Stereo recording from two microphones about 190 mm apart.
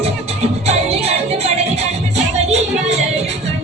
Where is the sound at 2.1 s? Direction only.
35° right (ahead or behind).